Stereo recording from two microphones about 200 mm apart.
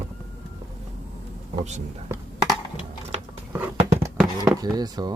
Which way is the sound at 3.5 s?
15° right (ahead or behind).